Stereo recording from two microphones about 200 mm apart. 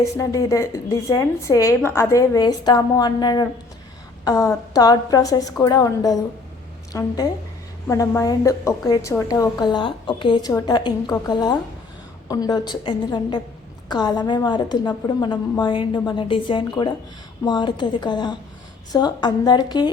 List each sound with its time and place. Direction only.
0.0 s a woman's voice: 15° left (ahead or behind)